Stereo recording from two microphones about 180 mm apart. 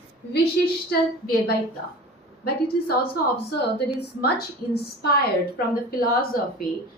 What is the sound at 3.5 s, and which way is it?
A woman's voice, 65° left (ahead or behind).